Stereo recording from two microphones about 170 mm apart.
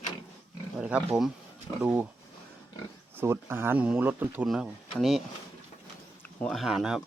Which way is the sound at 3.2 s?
15° right (ahead or behind).